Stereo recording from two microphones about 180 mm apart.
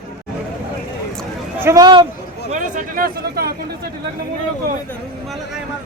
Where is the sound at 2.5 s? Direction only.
45° right (ahead or behind).